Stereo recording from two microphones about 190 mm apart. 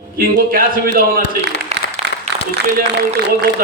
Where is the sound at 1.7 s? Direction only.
35° right (ahead or behind).